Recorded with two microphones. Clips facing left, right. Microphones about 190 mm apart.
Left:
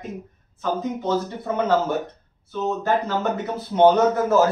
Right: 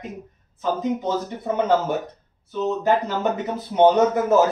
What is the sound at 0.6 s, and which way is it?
Speech, 15° right (ahead or behind).